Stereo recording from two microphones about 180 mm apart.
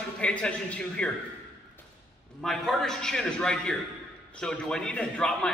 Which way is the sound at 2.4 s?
Centre (ahead or behind).